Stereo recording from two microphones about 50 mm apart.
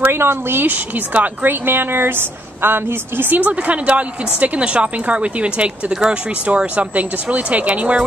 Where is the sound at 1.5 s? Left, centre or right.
Right.